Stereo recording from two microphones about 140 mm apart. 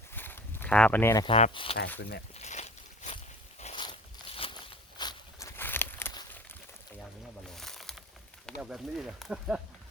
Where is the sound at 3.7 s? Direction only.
40° left (ahead or behind); by 6.1 s 15° left (ahead or behind).